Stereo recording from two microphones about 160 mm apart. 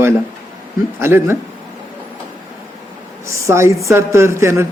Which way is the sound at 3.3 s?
15° right (ahead or behind).